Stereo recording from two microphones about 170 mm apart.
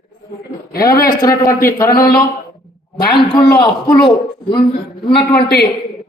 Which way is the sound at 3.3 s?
25° left (ahead or behind).